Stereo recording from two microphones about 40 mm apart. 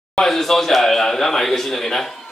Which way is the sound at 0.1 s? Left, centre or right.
Centre.